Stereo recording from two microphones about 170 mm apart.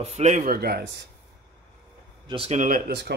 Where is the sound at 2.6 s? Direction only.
55° right (ahead or behind).